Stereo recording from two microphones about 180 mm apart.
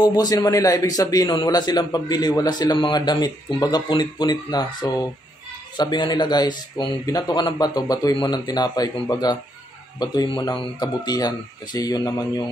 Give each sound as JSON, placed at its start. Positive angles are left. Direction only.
{"t": 0.0, "sound": "speech", "side_deg": 20}